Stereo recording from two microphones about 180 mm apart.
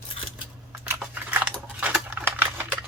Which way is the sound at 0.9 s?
10° right (ahead or behind).